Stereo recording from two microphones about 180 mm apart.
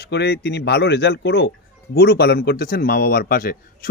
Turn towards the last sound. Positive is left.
turn(degrees=55)  # may be behind; listen again after turning